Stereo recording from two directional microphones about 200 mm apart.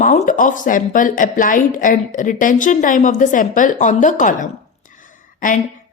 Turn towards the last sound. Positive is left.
turn(degrees=40)  # may be behind; listen again after turning